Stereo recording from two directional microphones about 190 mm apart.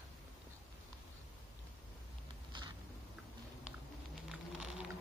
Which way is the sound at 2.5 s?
25° right (ahead or behind).